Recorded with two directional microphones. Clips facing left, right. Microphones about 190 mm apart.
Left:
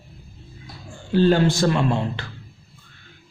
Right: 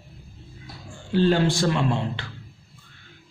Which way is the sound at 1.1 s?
45° left (ahead or behind).